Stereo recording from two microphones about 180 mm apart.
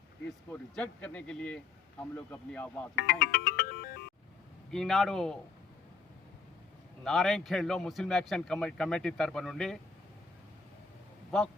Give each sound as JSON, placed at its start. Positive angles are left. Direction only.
{"t": 0.5, "sound": "speech", "side_deg": 5}
{"t": 2.9, "sound": "speech", "side_deg": 60}
{"t": 4.7, "sound": "speech", "side_deg": 0}
{"t": 7.0, "sound": "speech", "side_deg": 0}